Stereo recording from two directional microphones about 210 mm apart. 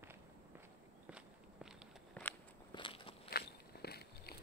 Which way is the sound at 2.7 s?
25° left (ahead or behind).